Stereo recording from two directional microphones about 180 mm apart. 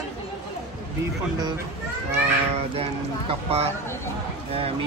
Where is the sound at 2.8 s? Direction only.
35° right (ahead or behind).